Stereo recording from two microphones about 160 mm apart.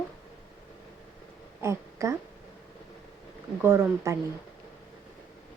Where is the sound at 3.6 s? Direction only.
15° right (ahead or behind).